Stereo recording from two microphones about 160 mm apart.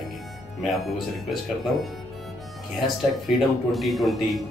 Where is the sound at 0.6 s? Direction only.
Centre (ahead or behind).